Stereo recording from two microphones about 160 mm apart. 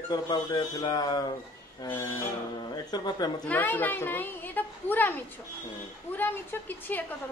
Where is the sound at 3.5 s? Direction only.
10° left (ahead or behind).